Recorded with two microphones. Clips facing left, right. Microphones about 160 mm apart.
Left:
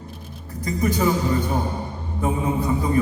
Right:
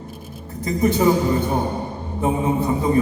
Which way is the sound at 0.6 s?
25° right (ahead or behind).